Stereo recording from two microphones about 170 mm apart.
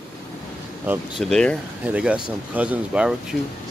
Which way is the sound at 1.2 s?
5° left (ahead or behind).